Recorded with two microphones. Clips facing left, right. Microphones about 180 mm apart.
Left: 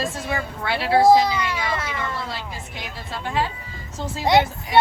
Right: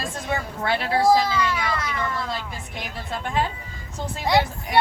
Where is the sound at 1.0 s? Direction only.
20° left (ahead or behind).